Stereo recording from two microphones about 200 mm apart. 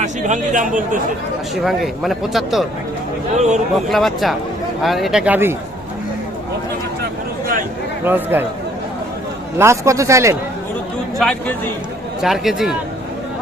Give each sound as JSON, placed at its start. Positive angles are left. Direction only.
{"t": 0.0, "sound": "speech", "side_deg": -40}
{"t": 1.6, "sound": "speech", "side_deg": 0}
{"t": 3.3, "sound": "speech", "side_deg": -35}
{"t": 3.8, "sound": "speech", "side_deg": 0}
{"t": 8.0, "sound": "speech", "side_deg": -10}
{"t": 9.6, "sound": "speech", "side_deg": -15}
{"t": 11.2, "sound": "speech", "side_deg": 5}